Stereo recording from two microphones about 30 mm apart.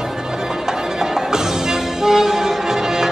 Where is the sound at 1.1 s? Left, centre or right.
Centre.